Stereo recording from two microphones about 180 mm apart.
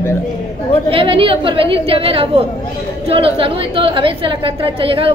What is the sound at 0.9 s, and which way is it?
A man's voice, 30° right (ahead or behind).